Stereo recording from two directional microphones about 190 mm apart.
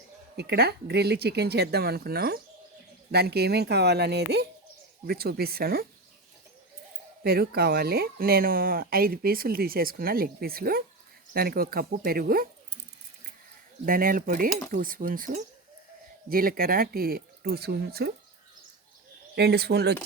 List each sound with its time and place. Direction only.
0.3 s speech: 60° right (ahead or behind)
7.3 s speech: 55° right (ahead or behind)
13.8 s speech: 45° right (ahead or behind)
16.3 s speech: 50° right (ahead or behind)
19.4 s speech: 60° right (ahead or behind)